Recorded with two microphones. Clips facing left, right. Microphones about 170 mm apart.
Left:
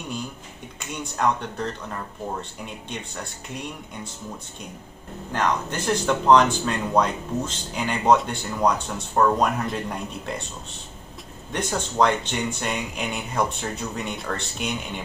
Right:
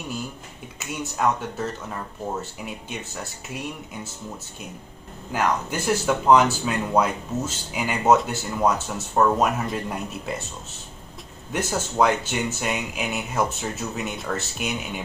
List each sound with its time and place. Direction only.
0.7 s speech: 5° right (ahead or behind)
5.3 s speech: 10° right (ahead or behind)
11.5 s speech: 5° right (ahead or behind)